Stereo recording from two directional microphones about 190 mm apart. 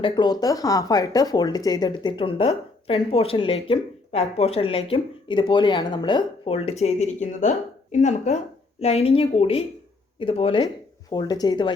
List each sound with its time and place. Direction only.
0.0 s a woman's voice: 20° left (ahead or behind)